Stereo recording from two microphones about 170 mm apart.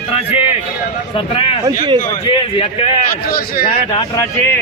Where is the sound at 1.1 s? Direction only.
30° left (ahead or behind).